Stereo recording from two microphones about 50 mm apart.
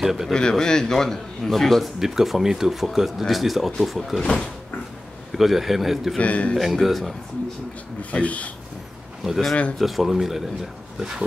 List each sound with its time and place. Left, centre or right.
0.0 s speech: centre
0.3 s a man's voice: centre
2.0 s speech: centre
4.2 s a man's voice: centre
5.3 s speech: centre
6.1 s speech: left
6.6 s speech: centre
8.0 s speech: left
9.2 s speech: centre